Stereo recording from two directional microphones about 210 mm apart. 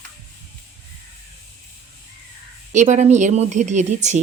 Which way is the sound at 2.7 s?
35° right (ahead or behind).